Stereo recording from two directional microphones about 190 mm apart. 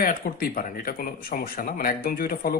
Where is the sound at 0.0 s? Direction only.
50° left (ahead or behind).